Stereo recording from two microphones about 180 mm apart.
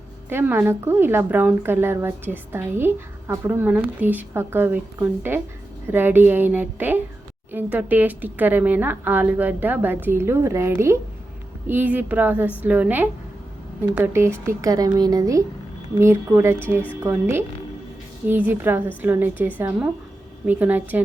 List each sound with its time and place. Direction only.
0.3 s speech: 10° right (ahead or behind)